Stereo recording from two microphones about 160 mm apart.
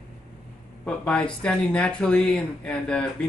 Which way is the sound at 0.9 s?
5° left (ahead or behind).